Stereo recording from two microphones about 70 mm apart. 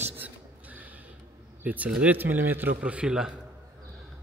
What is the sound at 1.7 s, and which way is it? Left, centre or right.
A man's voice, right.